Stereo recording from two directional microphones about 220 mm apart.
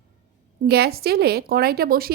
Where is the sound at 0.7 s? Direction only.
45° right (ahead or behind).